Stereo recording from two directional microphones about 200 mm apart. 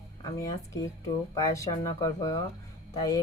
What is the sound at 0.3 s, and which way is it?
A woman's voice, 15° left (ahead or behind).